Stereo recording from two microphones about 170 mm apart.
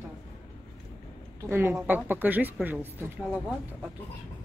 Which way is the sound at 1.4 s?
15° right (ahead or behind).